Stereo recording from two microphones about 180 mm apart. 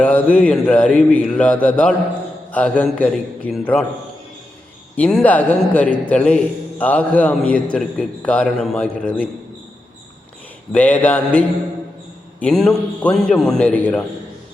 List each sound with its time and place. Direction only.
0.0 s a man's voice: 5° left (ahead or behind)
4.9 s a man's voice: 5° left (ahead or behind)
10.7 s a man's voice: 10° left (ahead or behind)